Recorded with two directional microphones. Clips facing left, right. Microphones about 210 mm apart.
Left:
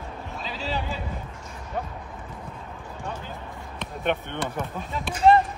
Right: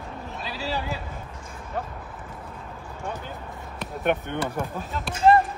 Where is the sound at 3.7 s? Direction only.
10° right (ahead or behind).